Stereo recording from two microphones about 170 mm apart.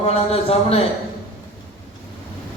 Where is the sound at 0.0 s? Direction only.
35° left (ahead or behind).